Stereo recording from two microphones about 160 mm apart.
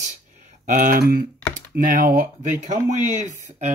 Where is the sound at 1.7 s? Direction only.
55° right (ahead or behind).